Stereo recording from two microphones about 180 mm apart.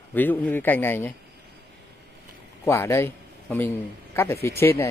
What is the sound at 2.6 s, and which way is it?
A man's voice, 15° left (ahead or behind).